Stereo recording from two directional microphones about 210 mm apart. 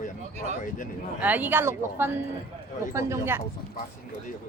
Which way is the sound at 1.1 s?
10° right (ahead or behind).